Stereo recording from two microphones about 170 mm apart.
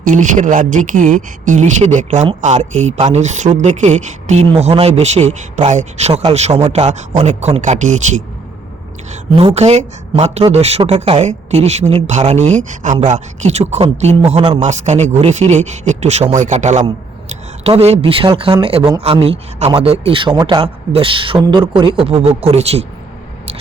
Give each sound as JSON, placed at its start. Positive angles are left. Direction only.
{"t": 0.0, "sound": "speech", "side_deg": -50}
{"t": 9.4, "sound": "speech", "side_deg": -35}